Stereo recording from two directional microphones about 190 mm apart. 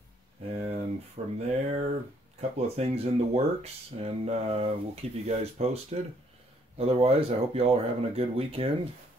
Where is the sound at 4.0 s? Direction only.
30° right (ahead or behind).